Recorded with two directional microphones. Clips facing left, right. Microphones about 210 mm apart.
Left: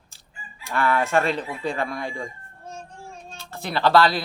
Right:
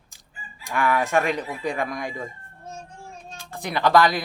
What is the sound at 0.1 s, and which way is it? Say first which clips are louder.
Fowl: even; 15° right (ahead or behind).